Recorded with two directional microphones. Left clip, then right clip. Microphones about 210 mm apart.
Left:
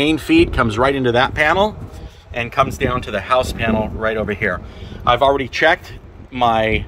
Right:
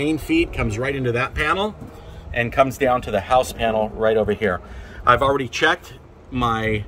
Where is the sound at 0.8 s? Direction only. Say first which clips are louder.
Left 8 dB; 55° left (ahead or behind).